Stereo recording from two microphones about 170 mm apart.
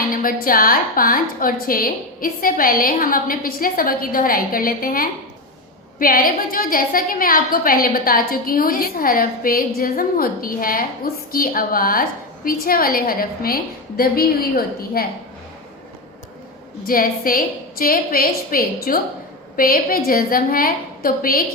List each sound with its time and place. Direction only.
0.1 s a woman's voice: 55° left (ahead or behind)
16.8 s a woman's voice: 55° left (ahead or behind)